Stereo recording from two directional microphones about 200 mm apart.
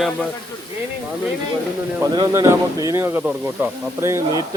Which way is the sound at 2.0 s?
20° right (ahead or behind).